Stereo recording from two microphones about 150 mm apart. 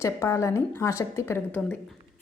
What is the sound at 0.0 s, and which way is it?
A woman's voice, 20° left (ahead or behind).